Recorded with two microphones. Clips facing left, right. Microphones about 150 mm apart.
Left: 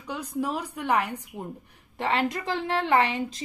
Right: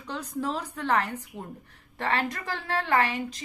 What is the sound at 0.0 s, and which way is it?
A woman's voice, 10° left (ahead or behind).